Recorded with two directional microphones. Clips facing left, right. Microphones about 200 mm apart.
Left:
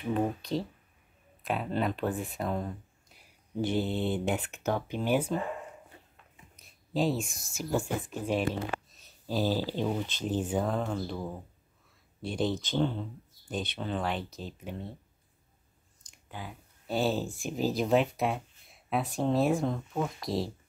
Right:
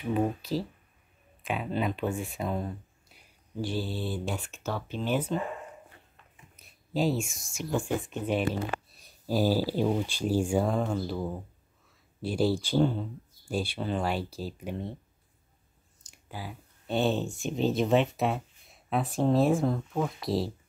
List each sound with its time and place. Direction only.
0.1 s speech: 5° right (ahead or behind)
3.6 s mantra: 20° left (ahead or behind)
4.5 s speech: 15° left (ahead or behind)
6.5 s a sound: centre (ahead or behind)
7.2 s speech: centre (ahead or behind)
9.0 s speech: 10° right (ahead or behind)
16.3 s speech: 10° right (ahead or behind)